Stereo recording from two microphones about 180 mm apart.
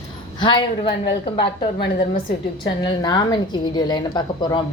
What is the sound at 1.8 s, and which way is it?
Speech, 55° left (ahead or behind).